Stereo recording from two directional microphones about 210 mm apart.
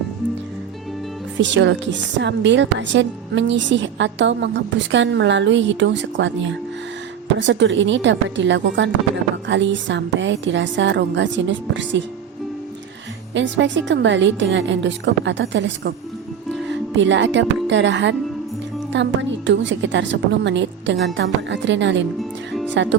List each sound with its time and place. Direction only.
1.4 s a woman's voice: 60° right (ahead or behind)
13.3 s a woman's voice: 60° right (ahead or behind)
16.9 s a woman's voice: 60° right (ahead or behind)
22.2 s music: centre (ahead or behind)
22.7 s a woman's voice: 60° right (ahead or behind)